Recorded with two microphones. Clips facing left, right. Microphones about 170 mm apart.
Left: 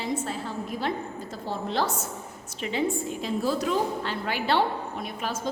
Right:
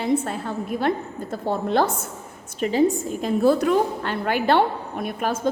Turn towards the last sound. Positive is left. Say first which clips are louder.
# right 6 dB
turn(degrees=-55)  # may be behind; listen again after turning